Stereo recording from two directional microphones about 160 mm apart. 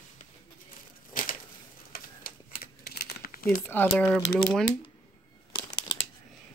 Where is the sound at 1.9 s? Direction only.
70° left (ahead or behind).